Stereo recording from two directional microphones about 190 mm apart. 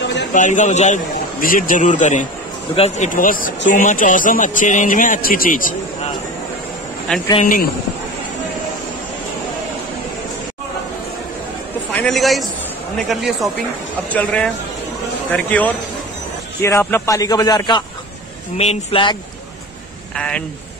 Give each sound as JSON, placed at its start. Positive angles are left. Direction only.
{"t": 0.0, "sound": "a sound", "side_deg": 65}
{"t": 0.3, "sound": "a man's voice", "side_deg": 40}
{"t": 7.1, "sound": "speech", "side_deg": 5}
{"t": 11.9, "sound": "a man's voice", "side_deg": 5}
{"t": 20.2, "sound": "speech", "side_deg": 5}